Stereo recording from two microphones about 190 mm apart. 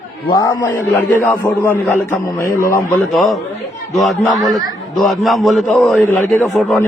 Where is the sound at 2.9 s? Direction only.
Centre (ahead or behind).